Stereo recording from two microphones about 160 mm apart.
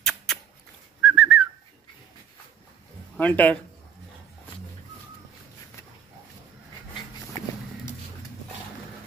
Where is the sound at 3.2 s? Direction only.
10° left (ahead or behind).